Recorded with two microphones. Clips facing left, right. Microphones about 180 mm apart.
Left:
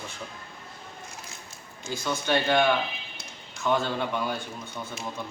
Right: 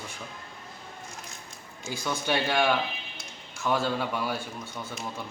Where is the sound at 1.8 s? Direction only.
10° right (ahead or behind).